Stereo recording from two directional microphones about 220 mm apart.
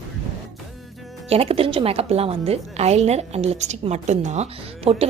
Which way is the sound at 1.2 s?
25° right (ahead or behind).